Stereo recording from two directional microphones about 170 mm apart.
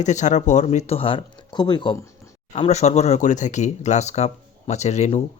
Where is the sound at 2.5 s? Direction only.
40° left (ahead or behind).